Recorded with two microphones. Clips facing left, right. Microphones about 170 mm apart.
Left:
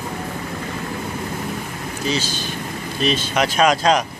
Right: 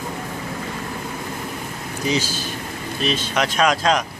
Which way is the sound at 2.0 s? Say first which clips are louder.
Right 1 dB; 15° right (ahead or behind).